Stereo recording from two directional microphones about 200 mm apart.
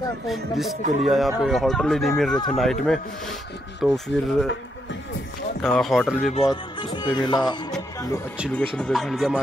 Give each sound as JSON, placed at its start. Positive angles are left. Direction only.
{"t": 0.3, "sound": "speech", "side_deg": 0}
{"t": 5.6, "sound": "speech", "side_deg": 5}
{"t": 6.5, "sound": "music", "side_deg": 25}
{"t": 8.7, "sound": "speech", "side_deg": 5}